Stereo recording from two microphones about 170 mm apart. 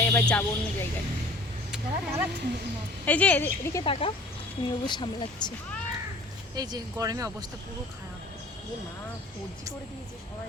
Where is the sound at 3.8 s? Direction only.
35° left (ahead or behind).